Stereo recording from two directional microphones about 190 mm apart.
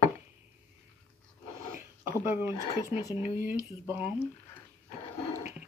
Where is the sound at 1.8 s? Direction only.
10° right (ahead or behind).